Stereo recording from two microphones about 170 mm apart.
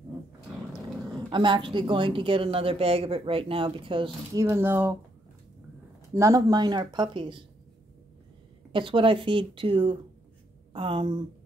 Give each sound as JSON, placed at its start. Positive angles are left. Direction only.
{"t": 1.3, "sound": "speech", "side_deg": -30}
{"t": 4.4, "sound": "speech", "side_deg": -15}
{"t": 6.1, "sound": "speech", "side_deg": -20}
{"t": 8.7, "sound": "speech", "side_deg": -30}